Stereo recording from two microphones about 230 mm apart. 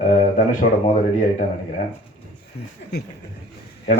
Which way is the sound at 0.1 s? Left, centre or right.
Left.